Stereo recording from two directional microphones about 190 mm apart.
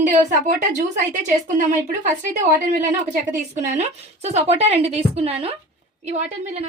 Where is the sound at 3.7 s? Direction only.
35° right (ahead or behind).